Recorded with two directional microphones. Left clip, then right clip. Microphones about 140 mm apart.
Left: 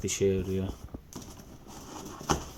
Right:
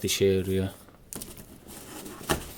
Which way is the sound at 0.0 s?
25° right (ahead or behind).